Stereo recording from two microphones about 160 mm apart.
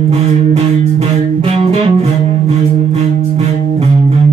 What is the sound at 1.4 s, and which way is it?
Music, 40° right (ahead or behind).